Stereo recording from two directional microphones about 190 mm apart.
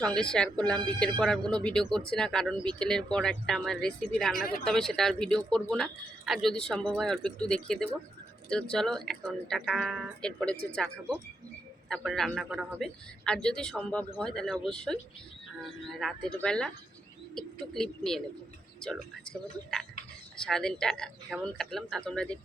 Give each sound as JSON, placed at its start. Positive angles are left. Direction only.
{"t": 0.0, "sound": "a man's voice", "side_deg": 5}
{"t": 1.4, "sound": "speech", "side_deg": -20}
{"t": 1.6, "sound": "a man's voice", "side_deg": 5}
{"t": 11.9, "sound": "a man's voice", "side_deg": 0}
{"t": 16.0, "sound": "a man's voice", "side_deg": 0}